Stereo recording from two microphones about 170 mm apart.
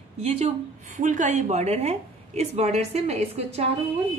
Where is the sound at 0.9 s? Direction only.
50° right (ahead or behind).